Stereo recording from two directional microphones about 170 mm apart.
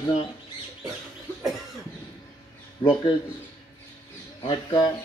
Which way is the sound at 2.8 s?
25° left (ahead or behind).